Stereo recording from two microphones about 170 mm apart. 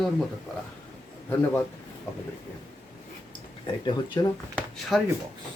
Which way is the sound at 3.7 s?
25° left (ahead or behind).